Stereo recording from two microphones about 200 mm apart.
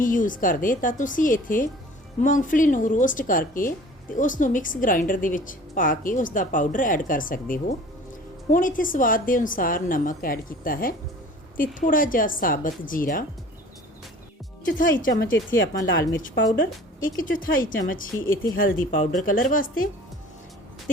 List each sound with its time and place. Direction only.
0.0 s a woman's voice: 40° left (ahead or behind)
14.6 s a woman's voice: 40° left (ahead or behind)